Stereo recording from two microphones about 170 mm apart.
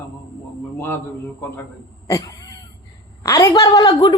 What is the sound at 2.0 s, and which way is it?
Cat, 20° left (ahead or behind).